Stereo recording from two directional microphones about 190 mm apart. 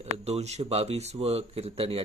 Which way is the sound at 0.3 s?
35° right (ahead or behind).